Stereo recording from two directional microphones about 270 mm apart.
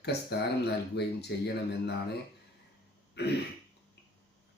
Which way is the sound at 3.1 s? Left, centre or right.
Left.